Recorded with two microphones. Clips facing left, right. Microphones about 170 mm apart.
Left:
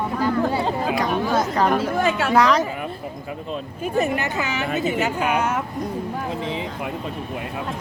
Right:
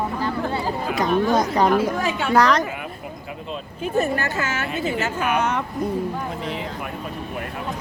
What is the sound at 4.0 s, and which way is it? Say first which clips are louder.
A woman's voice: even; 20° left (ahead or behind).